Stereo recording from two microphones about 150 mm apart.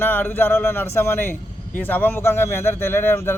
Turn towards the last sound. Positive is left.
turn(degrees=15)  # may be behind; listen again after turning